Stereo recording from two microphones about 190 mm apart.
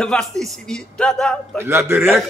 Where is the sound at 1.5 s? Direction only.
15° right (ahead or behind).